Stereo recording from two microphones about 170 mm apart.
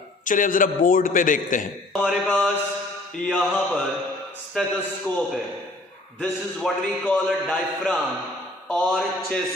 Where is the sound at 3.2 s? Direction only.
5° left (ahead or behind).